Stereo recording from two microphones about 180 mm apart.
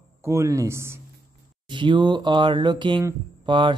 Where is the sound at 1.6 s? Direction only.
25° right (ahead or behind).